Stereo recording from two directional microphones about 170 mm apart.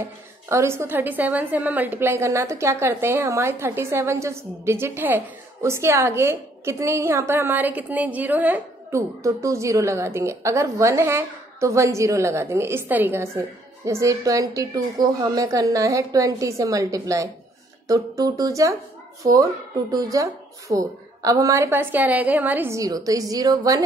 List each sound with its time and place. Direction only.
0.0 s a woman's voice: 15° right (ahead or behind)
19.9 s a woman's voice: 20° right (ahead or behind)